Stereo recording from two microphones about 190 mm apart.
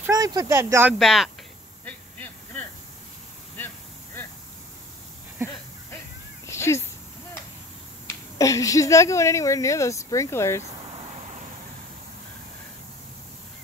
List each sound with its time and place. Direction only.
0.0 s speech: 20° right (ahead or behind)
0.9 s speech: centre (ahead or behind)
1.9 s hiss: 10° left (ahead or behind)
3.5 s a sound: 10° left (ahead or behind)
6.4 s cat: 15° left (ahead or behind)
8.4 s speech: 15° left (ahead or behind)